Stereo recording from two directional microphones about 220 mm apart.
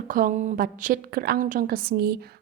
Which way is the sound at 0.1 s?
35° right (ahead or behind).